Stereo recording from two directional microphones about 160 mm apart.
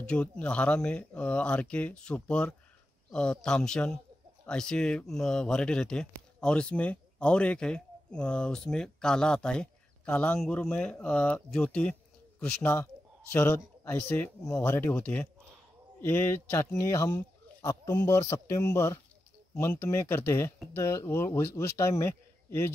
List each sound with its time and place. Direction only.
0.0 s speech: 5° left (ahead or behind)